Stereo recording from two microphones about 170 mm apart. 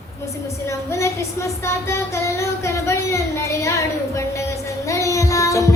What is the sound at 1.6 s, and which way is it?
Child singing, 15° left (ahead or behind).